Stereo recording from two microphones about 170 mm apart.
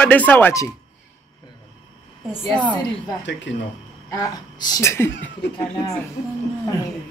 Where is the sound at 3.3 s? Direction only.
90° left.